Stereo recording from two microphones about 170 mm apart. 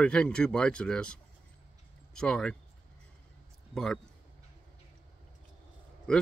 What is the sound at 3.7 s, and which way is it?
Speech, 5° left (ahead or behind).